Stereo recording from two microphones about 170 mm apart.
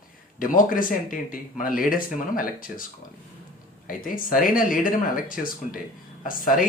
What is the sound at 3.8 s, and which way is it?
Speech, 55° left (ahead or behind).